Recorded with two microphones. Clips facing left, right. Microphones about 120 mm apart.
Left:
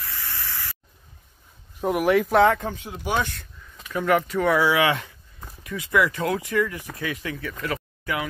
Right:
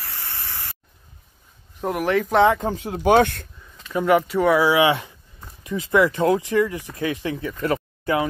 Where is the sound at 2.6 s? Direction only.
40° right (ahead or behind).